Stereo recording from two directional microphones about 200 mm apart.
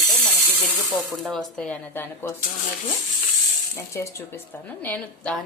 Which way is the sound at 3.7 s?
15° left (ahead or behind).